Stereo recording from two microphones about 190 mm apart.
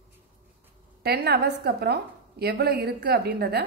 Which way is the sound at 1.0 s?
60° right (ahead or behind).